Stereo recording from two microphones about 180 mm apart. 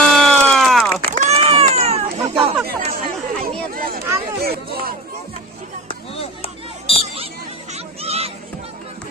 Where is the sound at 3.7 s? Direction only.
55° right (ahead or behind).